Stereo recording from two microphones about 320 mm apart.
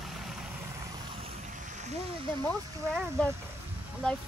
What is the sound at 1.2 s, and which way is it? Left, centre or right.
Boat, right.